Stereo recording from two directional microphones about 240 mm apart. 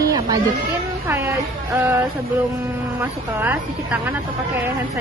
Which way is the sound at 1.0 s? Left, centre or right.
Centre.